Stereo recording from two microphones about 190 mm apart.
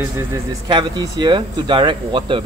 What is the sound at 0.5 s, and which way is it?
Speech, 25° right (ahead or behind).